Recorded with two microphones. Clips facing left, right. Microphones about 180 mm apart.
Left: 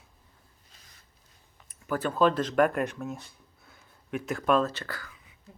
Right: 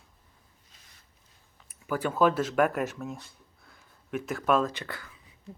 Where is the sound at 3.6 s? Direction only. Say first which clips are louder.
Left 1 dB; centre (ahead or behind); by 5.4 s 25° right (ahead or behind).